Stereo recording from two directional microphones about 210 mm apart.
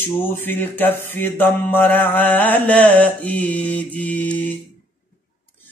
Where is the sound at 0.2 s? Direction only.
10° left (ahead or behind).